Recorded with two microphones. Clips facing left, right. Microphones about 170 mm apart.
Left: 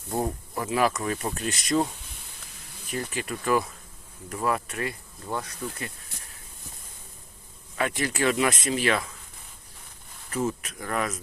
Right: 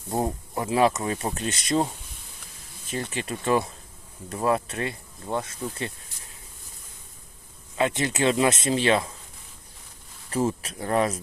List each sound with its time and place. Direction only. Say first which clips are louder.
0.1 s speech: right 2 dB; 25° right (ahead or behind)
2.9 s speech: right 1 dB; 25° right (ahead or behind)
7.8 s speech: right 3 dB; 25° right (ahead or behind)
10.2 s speech: right 3 dB; 30° right (ahead or behind)